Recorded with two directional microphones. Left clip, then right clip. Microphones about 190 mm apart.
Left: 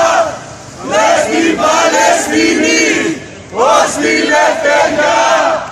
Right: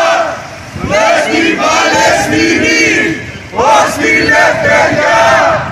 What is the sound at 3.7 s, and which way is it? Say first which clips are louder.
Battle cry: right 3 dB; 40° right (ahead or behind).